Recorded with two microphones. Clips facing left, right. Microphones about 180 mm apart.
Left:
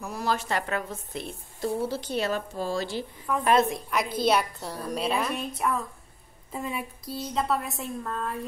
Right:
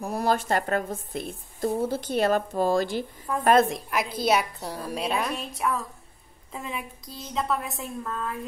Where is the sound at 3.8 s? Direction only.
5° right (ahead or behind).